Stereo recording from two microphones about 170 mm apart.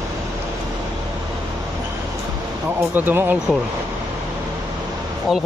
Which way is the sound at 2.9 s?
10° right (ahead or behind).